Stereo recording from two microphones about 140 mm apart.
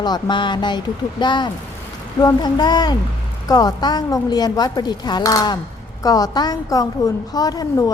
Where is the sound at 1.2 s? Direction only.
30° left (ahead or behind).